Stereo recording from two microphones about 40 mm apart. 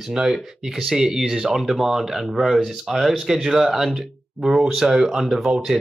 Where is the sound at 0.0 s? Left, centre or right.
Centre.